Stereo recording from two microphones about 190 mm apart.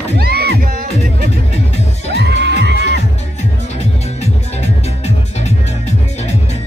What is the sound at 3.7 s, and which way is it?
Music, 35° left (ahead or behind).